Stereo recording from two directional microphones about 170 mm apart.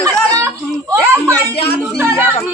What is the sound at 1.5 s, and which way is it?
Speech, 35° left (ahead or behind).